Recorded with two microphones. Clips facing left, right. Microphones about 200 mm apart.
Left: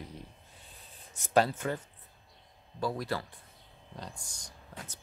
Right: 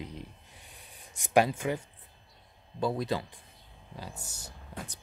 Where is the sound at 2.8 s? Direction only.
20° right (ahead or behind).